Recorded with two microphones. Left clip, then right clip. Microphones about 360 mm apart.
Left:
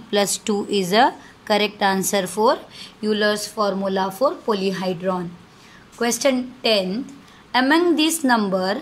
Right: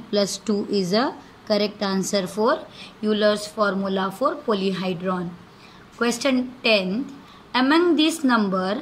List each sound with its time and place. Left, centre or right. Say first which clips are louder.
0.1 s a woman's voice: left 2 dB; left